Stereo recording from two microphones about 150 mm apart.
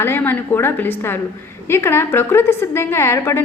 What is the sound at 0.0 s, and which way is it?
A woman's voice, 15° left (ahead or behind).